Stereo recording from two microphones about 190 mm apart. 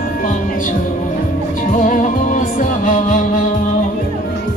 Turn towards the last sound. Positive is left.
turn(degrees=45)  # may be behind; listen again after turning